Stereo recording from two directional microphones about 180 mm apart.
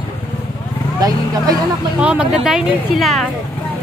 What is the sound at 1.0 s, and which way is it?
Speech, 20° right (ahead or behind).